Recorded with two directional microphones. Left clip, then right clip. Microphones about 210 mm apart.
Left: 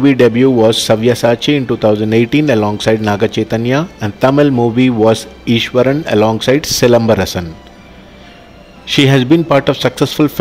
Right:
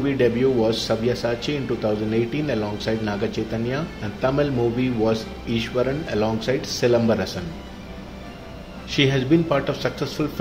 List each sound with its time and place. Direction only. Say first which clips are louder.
0.0 s a man's voice: left 11 dB; 55° left (ahead or behind)
8.8 s a man's voice: left 10 dB; 55° left (ahead or behind)